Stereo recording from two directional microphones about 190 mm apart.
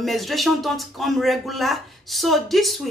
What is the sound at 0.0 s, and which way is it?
Speech, centre (ahead or behind).